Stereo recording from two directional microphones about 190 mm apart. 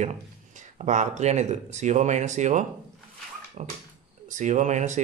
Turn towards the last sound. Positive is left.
turn(degrees=-40)  # may be behind; listen again after turning